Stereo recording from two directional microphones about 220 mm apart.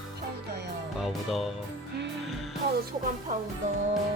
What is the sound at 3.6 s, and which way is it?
Music, 35° right (ahead or behind).